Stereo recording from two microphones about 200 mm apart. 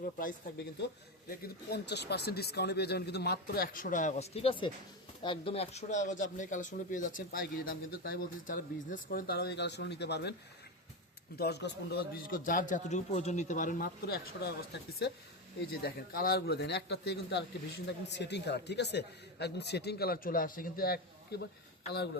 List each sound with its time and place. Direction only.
0.0 s speech: 45° left (ahead or behind)
11.3 s speech: 55° left (ahead or behind)